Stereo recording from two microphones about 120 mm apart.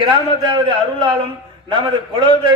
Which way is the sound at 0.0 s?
40° right (ahead or behind).